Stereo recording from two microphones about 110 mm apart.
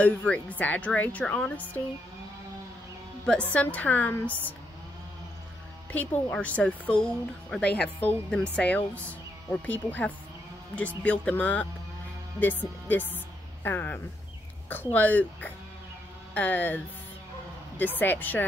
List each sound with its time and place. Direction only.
0.0 s speech: 15° left (ahead or behind)
3.3 s speech: 10° left (ahead or behind)
5.9 s speech: 15° left (ahead or behind)
12.8 s speech: 15° left (ahead or behind)